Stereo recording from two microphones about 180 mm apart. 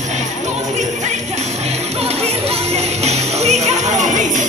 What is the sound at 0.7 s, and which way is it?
Music, 40° right (ahead or behind).